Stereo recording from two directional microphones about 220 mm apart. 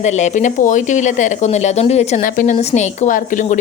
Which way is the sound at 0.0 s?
30° left (ahead or behind).